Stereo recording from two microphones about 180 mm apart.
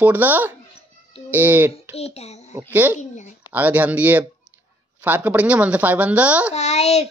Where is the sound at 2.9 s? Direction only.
40° left (ahead or behind).